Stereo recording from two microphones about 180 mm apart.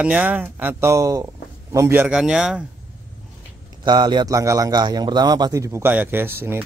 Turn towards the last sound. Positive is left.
turn(degrees=-15)  # may be behind; listen again after turning